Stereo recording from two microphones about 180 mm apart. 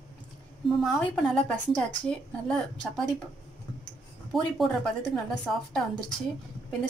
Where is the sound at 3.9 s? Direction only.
5° left (ahead or behind).